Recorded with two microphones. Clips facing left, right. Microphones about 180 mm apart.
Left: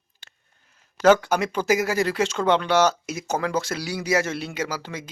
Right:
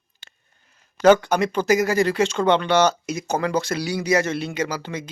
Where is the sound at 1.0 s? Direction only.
5° left (ahead or behind).